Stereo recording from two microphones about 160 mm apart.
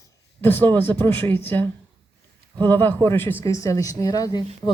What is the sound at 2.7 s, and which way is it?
Speech, 15° left (ahead or behind).